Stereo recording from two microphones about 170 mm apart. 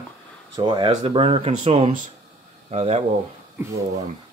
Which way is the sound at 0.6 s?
25° right (ahead or behind).